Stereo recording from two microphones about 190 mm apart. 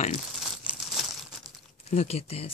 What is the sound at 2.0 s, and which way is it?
Speech, 35° left (ahead or behind).